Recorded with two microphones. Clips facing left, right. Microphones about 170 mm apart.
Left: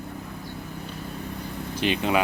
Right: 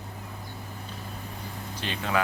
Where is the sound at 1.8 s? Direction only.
20° left (ahead or behind).